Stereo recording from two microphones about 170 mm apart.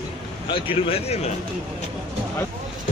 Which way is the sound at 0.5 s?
35° left (ahead or behind).